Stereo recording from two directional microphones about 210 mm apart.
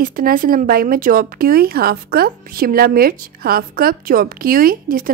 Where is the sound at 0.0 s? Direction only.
40° right (ahead or behind).